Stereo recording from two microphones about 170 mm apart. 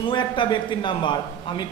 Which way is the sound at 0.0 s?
30° left (ahead or behind).